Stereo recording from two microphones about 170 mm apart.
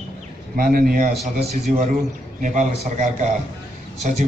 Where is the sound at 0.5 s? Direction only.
55° right (ahead or behind).